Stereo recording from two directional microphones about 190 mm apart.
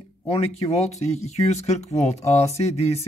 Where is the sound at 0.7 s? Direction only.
35° left (ahead or behind).